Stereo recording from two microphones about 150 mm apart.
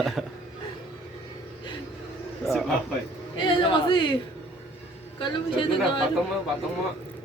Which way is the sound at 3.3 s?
35° left (ahead or behind).